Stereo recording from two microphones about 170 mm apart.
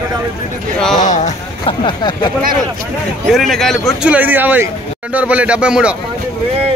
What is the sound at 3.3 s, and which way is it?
A man's voice, centre (ahead or behind).